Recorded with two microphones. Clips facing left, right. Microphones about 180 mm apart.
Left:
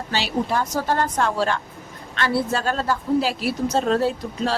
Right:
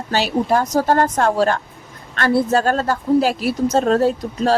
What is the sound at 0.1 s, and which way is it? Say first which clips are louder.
A woman's voice: right 6 dB; 45° right (ahead or behind).